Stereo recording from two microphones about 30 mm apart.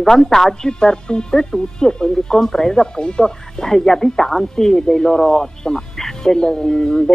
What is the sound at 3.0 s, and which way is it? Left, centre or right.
Speech, left.